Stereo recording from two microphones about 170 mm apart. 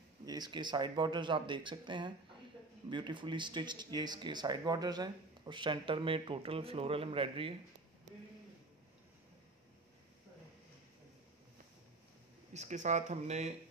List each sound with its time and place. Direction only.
0.2 s speech: 25° right (ahead or behind)
12.5 s speech: 45° right (ahead or behind)